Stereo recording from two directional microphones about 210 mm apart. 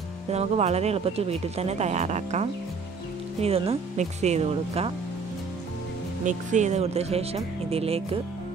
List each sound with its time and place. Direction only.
0.3 s speech: 30° right (ahead or behind)
6.2 s speech: 35° right (ahead or behind)